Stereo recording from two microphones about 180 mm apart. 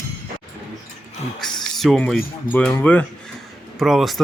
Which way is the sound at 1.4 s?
Centre (ahead or behind).